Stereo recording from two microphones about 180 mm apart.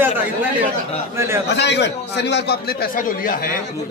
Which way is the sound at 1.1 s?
15° right (ahead or behind).